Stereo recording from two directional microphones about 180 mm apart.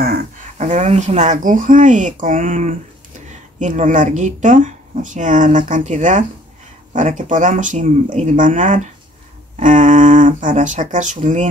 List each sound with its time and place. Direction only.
0.6 s speech: 40° right (ahead or behind)